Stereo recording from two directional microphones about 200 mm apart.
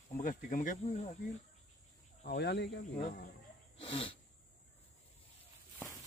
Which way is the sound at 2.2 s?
55° left (ahead or behind).